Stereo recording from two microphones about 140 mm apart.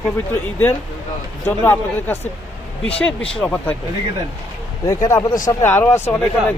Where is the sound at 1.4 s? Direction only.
15° left (ahead or behind).